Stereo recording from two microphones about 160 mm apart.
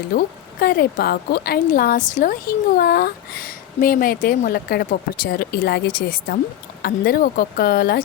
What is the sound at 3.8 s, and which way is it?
Speech, 60° left (ahead or behind).